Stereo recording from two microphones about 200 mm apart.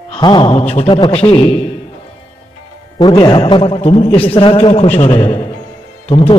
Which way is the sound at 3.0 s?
20° left (ahead or behind).